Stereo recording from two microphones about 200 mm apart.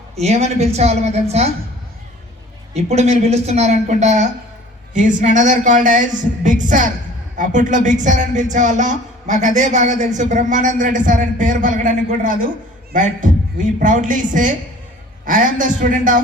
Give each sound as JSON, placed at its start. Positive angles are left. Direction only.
{"t": 0.2, "sound": "speech", "side_deg": -35}
{"t": 2.7, "sound": "speech", "side_deg": -35}